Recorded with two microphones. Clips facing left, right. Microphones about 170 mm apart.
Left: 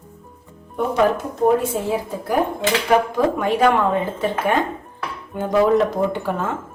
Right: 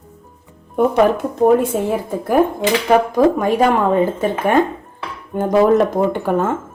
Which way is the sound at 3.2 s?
40° right (ahead or behind).